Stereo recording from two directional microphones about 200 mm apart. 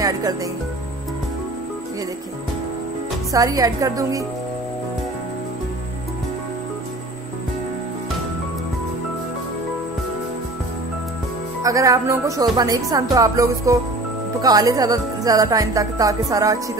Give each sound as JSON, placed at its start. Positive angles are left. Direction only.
{"t": 0.0, "sound": "speech", "side_deg": -15}
{"t": 3.3, "sound": "speech", "side_deg": -15}
{"t": 11.6, "sound": "speech", "side_deg": -15}